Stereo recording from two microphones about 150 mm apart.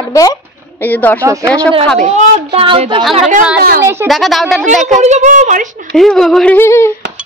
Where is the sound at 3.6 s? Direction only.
90° right.